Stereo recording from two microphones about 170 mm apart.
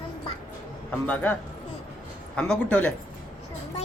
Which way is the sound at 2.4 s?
5° left (ahead or behind).